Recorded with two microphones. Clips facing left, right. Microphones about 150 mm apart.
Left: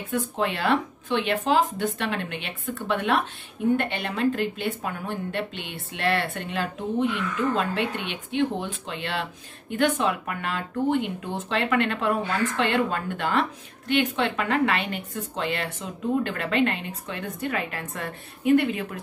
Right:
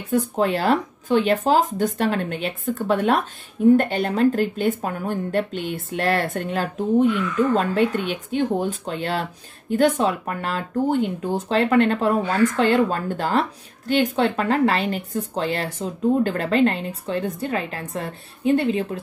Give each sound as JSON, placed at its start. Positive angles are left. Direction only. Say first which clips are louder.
{"t": 0.1, "sound": "speech", "louder": "right 6 dB", "side_deg": -40}